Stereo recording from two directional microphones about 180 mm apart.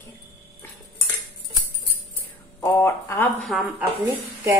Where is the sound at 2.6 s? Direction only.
15° left (ahead or behind).